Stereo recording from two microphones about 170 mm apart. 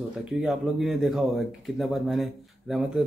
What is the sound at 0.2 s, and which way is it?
A man's voice, 5° right (ahead or behind).